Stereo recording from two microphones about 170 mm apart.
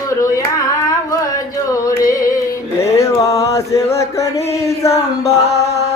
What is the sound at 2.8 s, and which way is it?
Chant, 15° left (ahead or behind).